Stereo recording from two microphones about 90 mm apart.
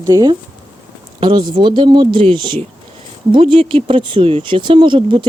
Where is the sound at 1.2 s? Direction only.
60° right (ahead or behind).